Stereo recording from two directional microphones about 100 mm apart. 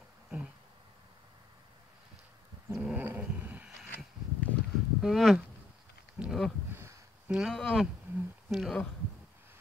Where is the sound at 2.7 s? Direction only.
10° right (ahead or behind).